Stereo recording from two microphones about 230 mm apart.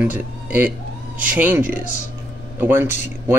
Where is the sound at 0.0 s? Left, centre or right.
Centre.